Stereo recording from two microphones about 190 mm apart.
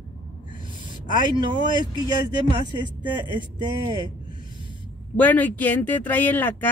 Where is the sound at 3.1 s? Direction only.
25° right (ahead or behind).